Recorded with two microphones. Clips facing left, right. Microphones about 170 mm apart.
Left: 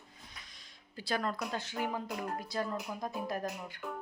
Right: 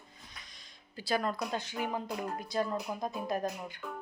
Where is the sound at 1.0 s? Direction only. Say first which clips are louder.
Right 2 dB; 5° right (ahead or behind).